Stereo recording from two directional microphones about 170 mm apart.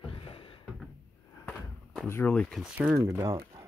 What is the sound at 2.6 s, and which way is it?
Speech, 10° right (ahead or behind).